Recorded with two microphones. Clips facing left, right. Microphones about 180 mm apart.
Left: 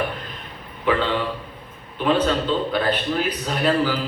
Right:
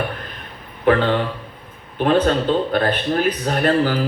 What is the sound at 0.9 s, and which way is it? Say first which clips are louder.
A man's voice: right 5 dB; 55° right (ahead or behind).